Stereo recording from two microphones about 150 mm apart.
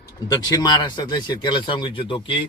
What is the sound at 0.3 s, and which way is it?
Speech, 25° left (ahead or behind).